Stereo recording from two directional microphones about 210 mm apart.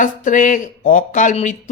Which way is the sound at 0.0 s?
40° left (ahead or behind).